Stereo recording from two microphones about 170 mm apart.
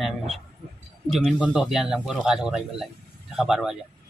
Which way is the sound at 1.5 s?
Centre (ahead or behind).